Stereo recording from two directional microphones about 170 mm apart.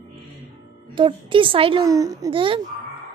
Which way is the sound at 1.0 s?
30° right (ahead or behind).